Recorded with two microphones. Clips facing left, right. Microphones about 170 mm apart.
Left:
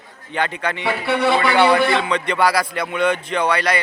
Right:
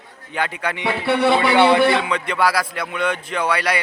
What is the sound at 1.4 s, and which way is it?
Speech, 25° right (ahead or behind).